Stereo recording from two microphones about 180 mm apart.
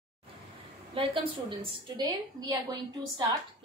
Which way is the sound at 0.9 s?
30° right (ahead or behind).